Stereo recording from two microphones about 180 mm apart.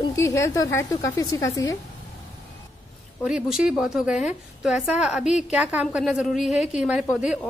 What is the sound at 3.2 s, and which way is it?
A woman's voice, 5° right (ahead or behind).